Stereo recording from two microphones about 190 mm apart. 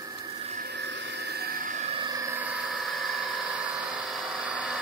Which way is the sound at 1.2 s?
55° right (ahead or behind).